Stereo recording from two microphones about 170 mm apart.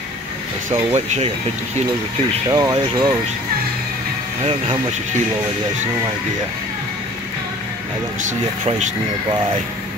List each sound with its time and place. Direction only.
0.9 s speech: 45° right (ahead or behind)
2.5 s speech: 25° right (ahead or behind)
8.3 s speech: 45° right (ahead or behind)